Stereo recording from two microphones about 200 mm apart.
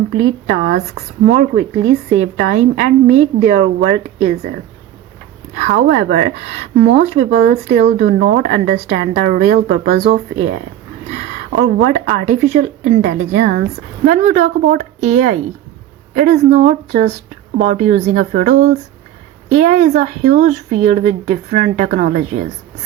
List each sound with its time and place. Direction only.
0.3 s a woman's voice: 40° right (ahead or behind)
5.8 s a woman's voice: 35° right (ahead or behind)